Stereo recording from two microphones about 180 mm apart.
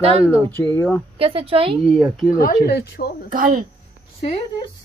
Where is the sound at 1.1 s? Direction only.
35° right (ahead or behind).